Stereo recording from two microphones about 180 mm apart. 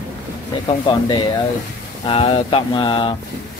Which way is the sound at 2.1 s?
30° left (ahead or behind).